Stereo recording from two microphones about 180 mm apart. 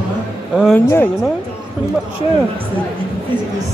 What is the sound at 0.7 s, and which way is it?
Speech, 15° left (ahead or behind).